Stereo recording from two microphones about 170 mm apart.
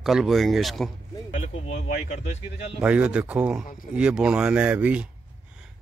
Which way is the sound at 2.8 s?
5° right (ahead or behind).